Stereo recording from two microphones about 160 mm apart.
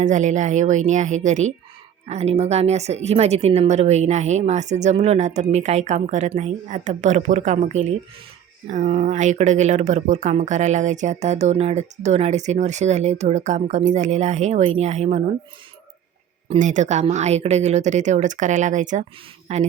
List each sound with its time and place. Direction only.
0.0 s speech: 50° right (ahead or behind)
16.5 s speech: 50° right (ahead or behind)